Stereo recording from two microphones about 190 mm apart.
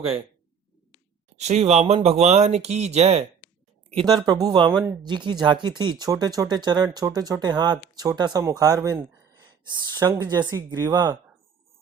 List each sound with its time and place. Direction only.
1.4 s speech: 35° right (ahead or behind)
3.9 s speech: 20° right (ahead or behind)